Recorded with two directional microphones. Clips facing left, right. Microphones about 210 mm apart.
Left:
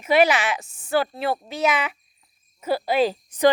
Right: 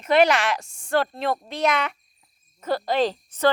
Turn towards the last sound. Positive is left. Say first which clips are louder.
# left 2 dB
turn(degrees=10)  # may be behind; listen again after turning